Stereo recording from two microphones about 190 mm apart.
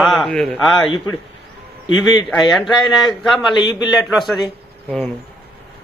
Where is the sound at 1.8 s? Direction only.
25° left (ahead or behind).